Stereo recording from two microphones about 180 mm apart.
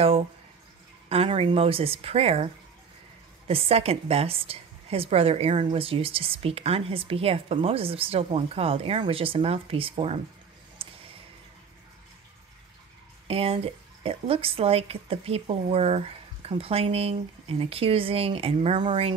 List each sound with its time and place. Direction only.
1.0 s a woman's voice: 35° right (ahead or behind)
10.8 s a sound: 30° right (ahead or behind)
13.3 s a woman's voice: 35° right (ahead or behind)